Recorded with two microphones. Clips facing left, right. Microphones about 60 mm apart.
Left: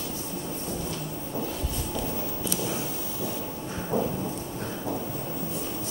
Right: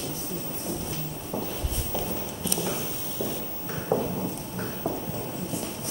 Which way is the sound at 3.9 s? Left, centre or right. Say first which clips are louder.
Right 1 dB; right.